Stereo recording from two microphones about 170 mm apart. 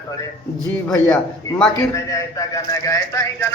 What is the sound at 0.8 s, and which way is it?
Speech, 10° left (ahead or behind).